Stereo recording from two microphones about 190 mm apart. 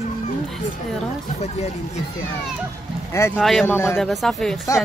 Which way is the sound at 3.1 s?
15° left (ahead or behind).